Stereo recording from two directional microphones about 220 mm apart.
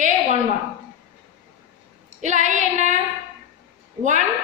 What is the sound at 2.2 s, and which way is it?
Speech, 35° right (ahead or behind).